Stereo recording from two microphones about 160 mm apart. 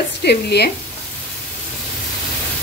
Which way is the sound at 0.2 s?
90° left.